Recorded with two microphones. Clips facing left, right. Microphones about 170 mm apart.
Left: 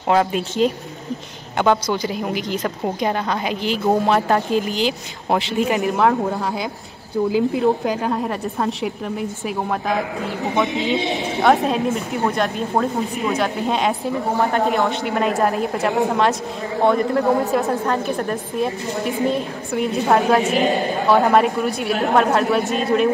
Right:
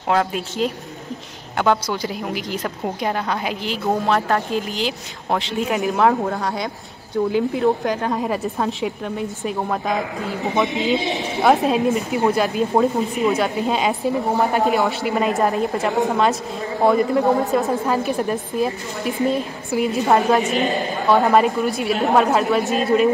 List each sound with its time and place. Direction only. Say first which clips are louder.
0.1 s a woman's voice: left 2 dB; centre (ahead or behind)